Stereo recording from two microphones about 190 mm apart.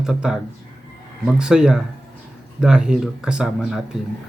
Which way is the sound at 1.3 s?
5° right (ahead or behind).